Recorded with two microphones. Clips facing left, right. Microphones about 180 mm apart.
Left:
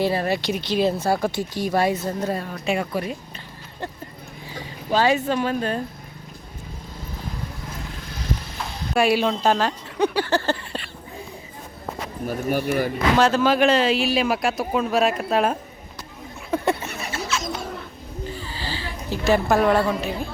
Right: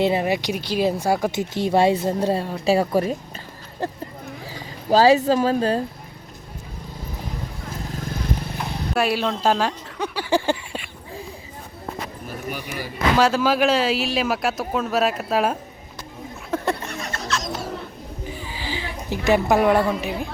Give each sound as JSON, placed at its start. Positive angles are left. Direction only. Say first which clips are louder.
{"t": 0.0, "sound": "speech", "louder": "right 2 dB", "side_deg": -20}
{"t": 4.9, "sound": "speech", "louder": "right 5 dB", "side_deg": -35}
{"t": 7.9, "sound": "vehicle", "louder": "right 4 dB", "side_deg": -50}
{"t": 9.0, "sound": "speech", "louder": "left 3 dB", "side_deg": 0}
{"t": 10.2, "sound": "a sound", "louder": "right 2 dB", "side_deg": -10}
{"t": 12.5, "sound": "speech", "louder": "left 10 dB", "side_deg": 50}
{"t": 13.1, "sound": "speech", "louder": "even", "side_deg": -5}
{"t": 16.5, "sound": "a sound", "louder": "left 2 dB", "side_deg": 5}
{"t": 18.3, "sound": "a sound", "louder": "right 1 dB", "side_deg": -15}